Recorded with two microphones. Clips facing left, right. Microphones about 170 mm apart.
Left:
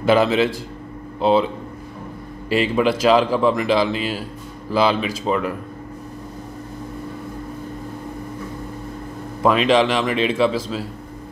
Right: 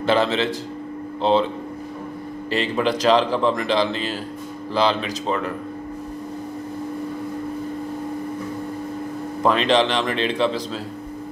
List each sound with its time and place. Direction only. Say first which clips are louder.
0.0 s speech: left 3 dB; 10° left (ahead or behind)
2.5 s speech: left 4 dB; 10° left (ahead or behind)
9.4 s speech: left 2 dB; 5° left (ahead or behind)